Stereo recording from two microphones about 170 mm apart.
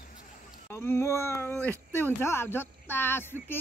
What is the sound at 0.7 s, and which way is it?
Speech, 15° left (ahead or behind).